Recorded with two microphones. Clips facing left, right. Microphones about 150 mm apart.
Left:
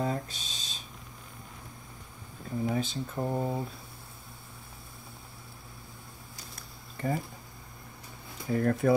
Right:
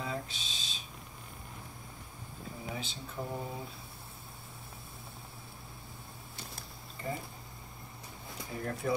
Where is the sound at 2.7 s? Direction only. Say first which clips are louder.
Left 9 dB; 50° left (ahead or behind).